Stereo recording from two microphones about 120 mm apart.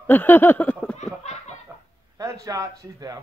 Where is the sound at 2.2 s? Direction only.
25° right (ahead or behind).